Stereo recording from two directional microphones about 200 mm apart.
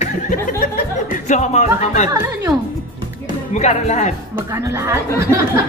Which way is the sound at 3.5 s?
35° left (ahead or behind).